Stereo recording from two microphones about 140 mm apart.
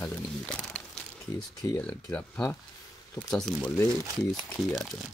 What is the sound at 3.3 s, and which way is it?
Speech, 5° left (ahead or behind).